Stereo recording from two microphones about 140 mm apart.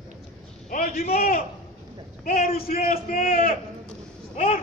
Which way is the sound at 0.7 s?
80° left.